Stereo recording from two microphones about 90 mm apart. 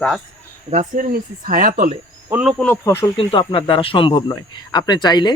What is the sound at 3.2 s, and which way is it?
Speech, 75° left (ahead or behind).